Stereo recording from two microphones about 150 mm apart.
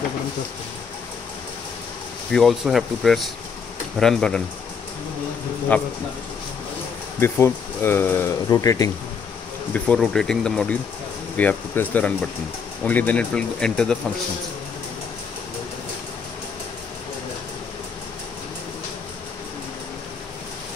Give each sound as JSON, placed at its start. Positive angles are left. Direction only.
{"t": 2.3, "sound": "speech", "side_deg": 0}
{"t": 5.7, "sound": "speech", "side_deg": 10}
{"t": 7.2, "sound": "speech", "side_deg": 15}
{"t": 9.8, "sound": "speech", "side_deg": 5}